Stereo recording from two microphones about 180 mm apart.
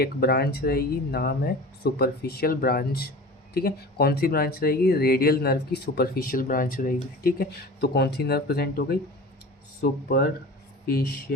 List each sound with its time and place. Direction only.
0.0 s speech: 60° left (ahead or behind)